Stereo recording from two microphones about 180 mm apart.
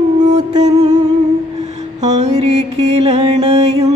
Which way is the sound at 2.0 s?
40° right (ahead or behind).